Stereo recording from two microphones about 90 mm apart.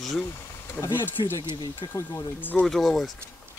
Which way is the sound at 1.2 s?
55° left (ahead or behind).